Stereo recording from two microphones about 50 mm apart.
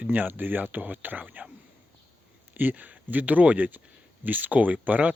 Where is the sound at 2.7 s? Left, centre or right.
Right.